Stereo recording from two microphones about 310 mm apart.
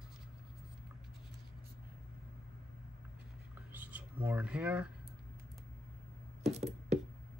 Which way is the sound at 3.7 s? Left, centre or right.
Centre.